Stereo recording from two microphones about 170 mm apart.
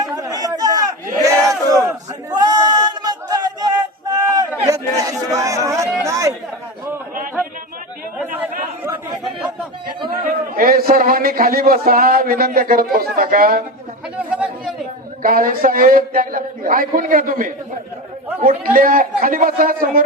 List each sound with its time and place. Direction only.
0.0 s chatter: 20° right (ahead or behind)
1.2 s battle cry: 20° right (ahead or behind)
2.3 s a sound: 25° right (ahead or behind)
10.5 s a man's voice: 60° right (ahead or behind)
14.2 s chatter: 10° right (ahead or behind)
15.2 s speech: 55° right (ahead or behind)